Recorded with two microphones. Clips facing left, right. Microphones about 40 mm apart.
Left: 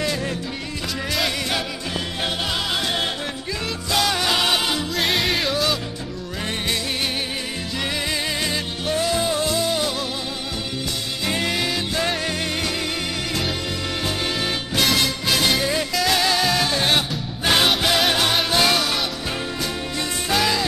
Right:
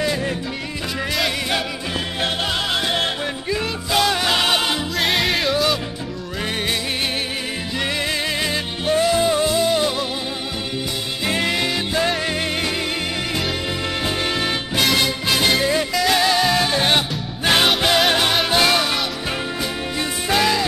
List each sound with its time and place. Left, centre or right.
0.0 s music: centre
1.1 s music: centre
3.9 s music: centre
4.9 s music: centre
8.4 s music: centre
11.2 s music: centre
14.0 s music: centre
20.0 s music: centre